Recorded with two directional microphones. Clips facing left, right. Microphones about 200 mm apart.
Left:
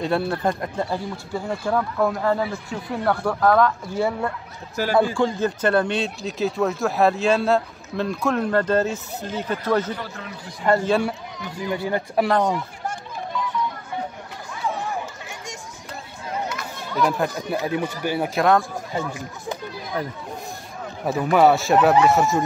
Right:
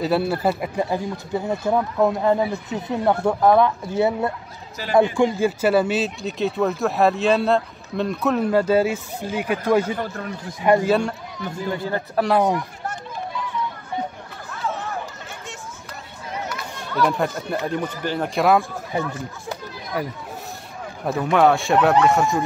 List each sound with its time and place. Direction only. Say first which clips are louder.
0.0 s speech: right 2 dB; 5° right (ahead or behind)
0.8 s speech: right 3 dB; 20° right (ahead or behind)
9.9 s speech: right 6 dB; 50° right (ahead or behind)
10.6 s speech: right 3 dB; 15° right (ahead or behind)
10.9 s speech: right 1 dB; 5° left (ahead or behind)
11.6 s speech: left 2 dB; 15° left (ahead or behind)
12.3 s speech: right 4 dB; 10° right (ahead or behind)
14.5 s hubbub: left 1 dB; 10° left (ahead or behind)
16.7 s speech: right 1 dB; 5° left (ahead or behind)
18.4 s speech: right 1 dB; 5° right (ahead or behind)
19.0 s speech: even; 15° left (ahead or behind)
21.0 s speech: left 1 dB; 5° left (ahead or behind)